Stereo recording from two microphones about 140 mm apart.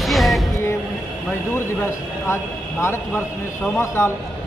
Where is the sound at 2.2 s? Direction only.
20° left (ahead or behind).